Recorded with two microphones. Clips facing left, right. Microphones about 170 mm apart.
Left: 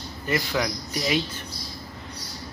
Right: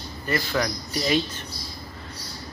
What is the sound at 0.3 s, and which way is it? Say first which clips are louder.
Speech: even; 10° left (ahead or behind).